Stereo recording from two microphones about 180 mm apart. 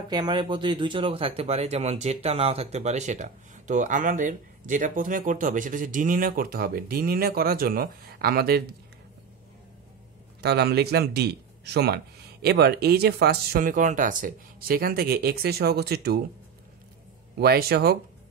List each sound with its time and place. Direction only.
0.1 s speech: 25° right (ahead or behind); by 8.6 s 60° right (ahead or behind)
10.4 s speech: 65° right (ahead or behind)
17.4 s speech: 60° right (ahead or behind)